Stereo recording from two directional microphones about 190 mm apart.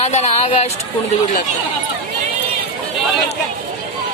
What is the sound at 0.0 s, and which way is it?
Speech, 35° left (ahead or behind).